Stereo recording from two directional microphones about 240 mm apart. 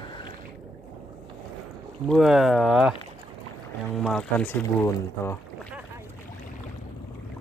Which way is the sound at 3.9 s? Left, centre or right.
Centre.